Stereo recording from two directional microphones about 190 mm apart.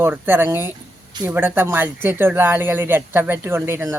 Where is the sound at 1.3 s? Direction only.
10° right (ahead or behind).